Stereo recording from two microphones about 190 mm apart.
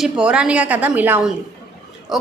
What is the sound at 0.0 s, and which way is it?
A woman's voice, 5° right (ahead or behind).